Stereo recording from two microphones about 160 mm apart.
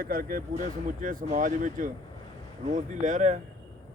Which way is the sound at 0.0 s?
65° right (ahead or behind).